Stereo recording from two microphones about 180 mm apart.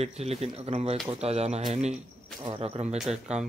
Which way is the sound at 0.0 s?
35° right (ahead or behind).